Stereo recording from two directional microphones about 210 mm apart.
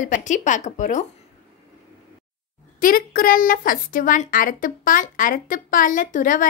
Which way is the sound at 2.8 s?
40° left (ahead or behind).